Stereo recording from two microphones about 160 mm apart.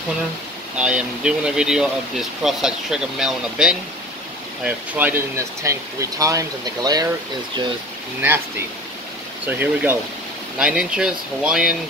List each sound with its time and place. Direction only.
0.7 s speech: 5° right (ahead or behind); by 7.1 s 25° right (ahead or behind)
9.5 s speech: 10° right (ahead or behind)